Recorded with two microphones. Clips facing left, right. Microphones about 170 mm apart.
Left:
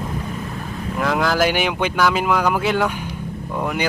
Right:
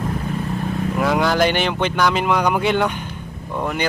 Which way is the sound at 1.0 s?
Centre (ahead or behind).